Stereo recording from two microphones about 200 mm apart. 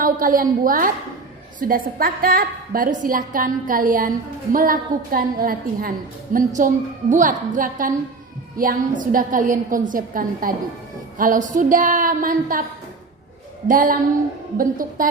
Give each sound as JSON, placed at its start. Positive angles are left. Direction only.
{"t": 0.0, "sound": "a woman's voice", "side_deg": -45}
{"t": 13.7, "sound": "a woman's voice", "side_deg": -45}